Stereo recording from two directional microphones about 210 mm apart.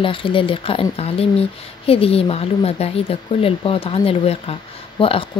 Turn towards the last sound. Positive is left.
turn(degrees=25)  # may be behind; listen again after turning